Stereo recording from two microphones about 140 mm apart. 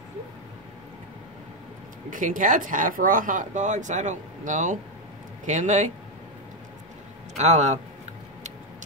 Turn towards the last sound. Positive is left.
turn(degrees=-55)  # may be behind; listen again after turning